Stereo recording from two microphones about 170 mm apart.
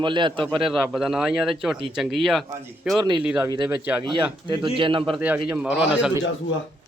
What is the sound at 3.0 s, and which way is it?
Speech, 25° right (ahead or behind).